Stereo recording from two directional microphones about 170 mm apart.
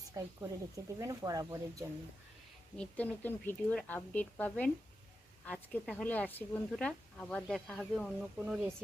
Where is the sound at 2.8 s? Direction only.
10° left (ahead or behind).